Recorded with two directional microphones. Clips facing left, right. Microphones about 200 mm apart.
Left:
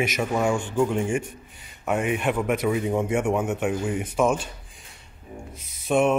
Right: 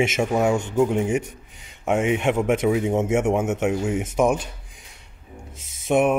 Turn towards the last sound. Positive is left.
turn(degrees=-15)  # may be behind; listen again after turning